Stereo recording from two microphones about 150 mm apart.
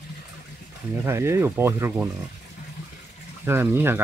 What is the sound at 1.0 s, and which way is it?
Speech, 20° right (ahead or behind).